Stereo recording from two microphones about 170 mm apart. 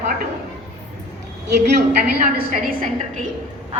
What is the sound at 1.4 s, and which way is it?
A woman's voice, 75° right (ahead or behind).